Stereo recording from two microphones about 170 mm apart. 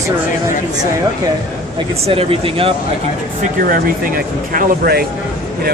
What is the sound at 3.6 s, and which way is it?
Speech, 55° right (ahead or behind).